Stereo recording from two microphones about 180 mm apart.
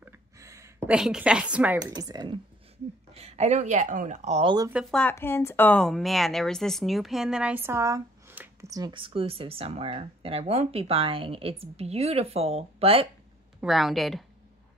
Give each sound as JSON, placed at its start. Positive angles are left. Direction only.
{"t": 0.0, "sound": "a sound", "side_deg": -15}
{"t": 0.9, "sound": "a woman's voice", "side_deg": -5}
{"t": 1.8, "sound": "speech", "side_deg": -20}
{"t": 3.1, "sound": "a woman's voice", "side_deg": -35}
{"t": 4.6, "sound": "speech", "side_deg": -10}
{"t": 4.9, "sound": "speech", "side_deg": 10}
{"t": 13.6, "sound": "a woman's voice", "side_deg": 0}